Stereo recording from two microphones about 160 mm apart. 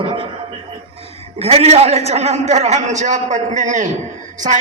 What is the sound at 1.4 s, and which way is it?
A man's voice, 40° right (ahead or behind).